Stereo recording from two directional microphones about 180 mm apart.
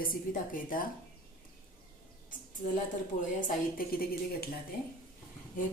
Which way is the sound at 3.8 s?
55° left (ahead or behind).